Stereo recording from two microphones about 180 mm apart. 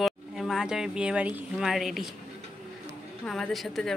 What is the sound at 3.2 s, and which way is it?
Speech, 5° left (ahead or behind).